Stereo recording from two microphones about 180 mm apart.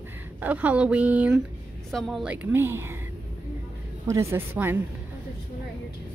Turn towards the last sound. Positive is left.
turn(degrees=-10)  # may be behind; listen again after turning